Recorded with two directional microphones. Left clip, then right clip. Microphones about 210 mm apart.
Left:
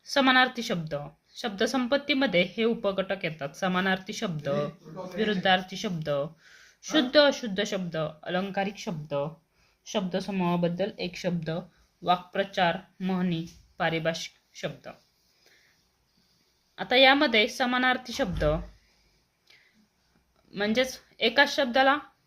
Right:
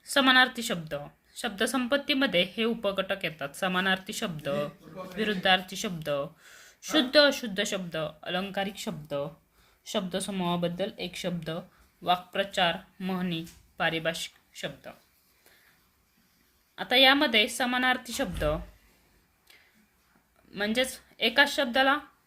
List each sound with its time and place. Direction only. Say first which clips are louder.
0.0 s speech: even; 5° right (ahead or behind)
16.7 s speech: left 1 dB; 5° right (ahead or behind)
20.5 s speech: left 2 dB; 5° right (ahead or behind)